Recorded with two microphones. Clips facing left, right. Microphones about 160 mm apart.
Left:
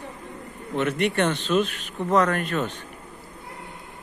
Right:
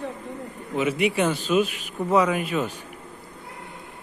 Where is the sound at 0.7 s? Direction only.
5° right (ahead or behind).